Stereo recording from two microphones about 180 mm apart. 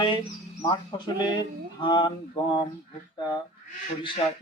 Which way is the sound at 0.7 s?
25° left (ahead or behind).